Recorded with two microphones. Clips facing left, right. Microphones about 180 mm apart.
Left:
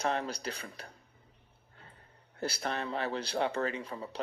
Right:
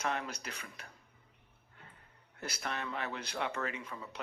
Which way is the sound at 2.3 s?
30° left (ahead or behind).